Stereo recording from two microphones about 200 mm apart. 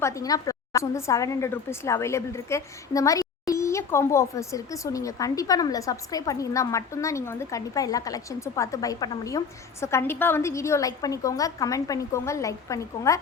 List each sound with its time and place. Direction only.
0.0 s a woman's voice: 15° left (ahead or behind)